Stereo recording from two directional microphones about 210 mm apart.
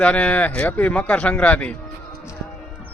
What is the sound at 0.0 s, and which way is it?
Speech, 5° left (ahead or behind).